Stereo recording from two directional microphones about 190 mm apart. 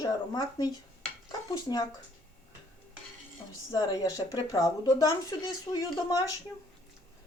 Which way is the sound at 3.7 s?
20° left (ahead or behind).